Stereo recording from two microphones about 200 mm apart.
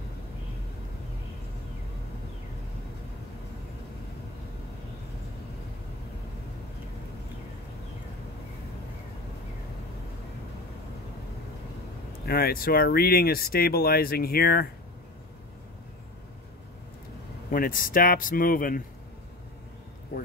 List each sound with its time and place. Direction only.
12.3 s speech: 50° left (ahead or behind)
17.5 s speech: 45° left (ahead or behind)